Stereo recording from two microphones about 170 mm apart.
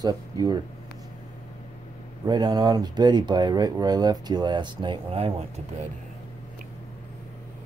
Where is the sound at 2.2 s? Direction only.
25° right (ahead or behind).